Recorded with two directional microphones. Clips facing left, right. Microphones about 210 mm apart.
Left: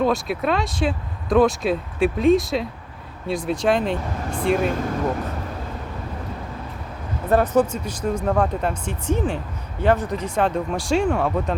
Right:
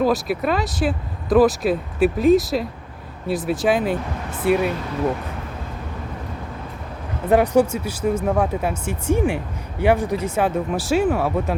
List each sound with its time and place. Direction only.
0.0 s speech: centre (ahead or behind)
4.5 s speech: 50° left (ahead or behind)
7.3 s speech: 15° right (ahead or behind)